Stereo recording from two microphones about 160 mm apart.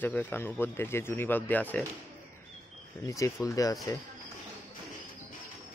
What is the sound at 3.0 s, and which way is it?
Speech, 20° left (ahead or behind).